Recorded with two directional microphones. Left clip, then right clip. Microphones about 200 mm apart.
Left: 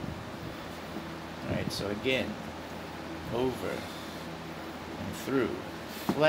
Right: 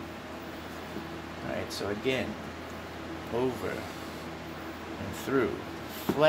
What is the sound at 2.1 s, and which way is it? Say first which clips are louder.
Speech: left 1 dB; centre (ahead or behind).